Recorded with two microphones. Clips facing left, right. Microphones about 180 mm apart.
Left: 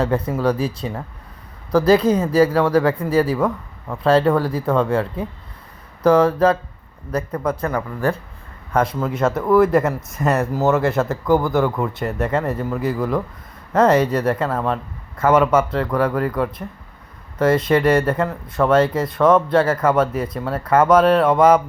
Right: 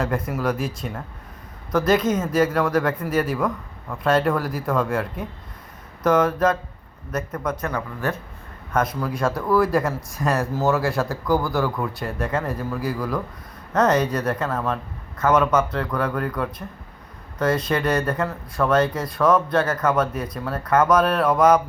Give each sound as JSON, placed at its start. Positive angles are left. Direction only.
{"t": 0.0, "sound": "speech", "side_deg": 30}
{"t": 7.7, "sound": "speech", "side_deg": 35}